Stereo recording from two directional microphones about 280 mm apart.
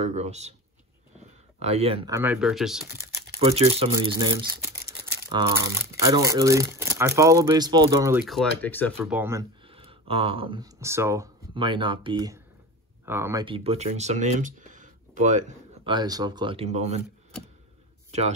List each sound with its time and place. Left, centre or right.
0.1 s speech: right
1.6 s speech: right
2.1 s speech: centre
3.3 s speech: right